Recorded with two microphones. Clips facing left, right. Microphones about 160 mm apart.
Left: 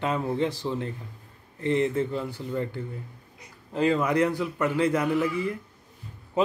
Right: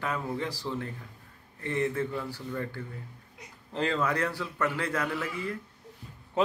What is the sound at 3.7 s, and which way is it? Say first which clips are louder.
A man's voice: left 5 dB; 10° left (ahead or behind).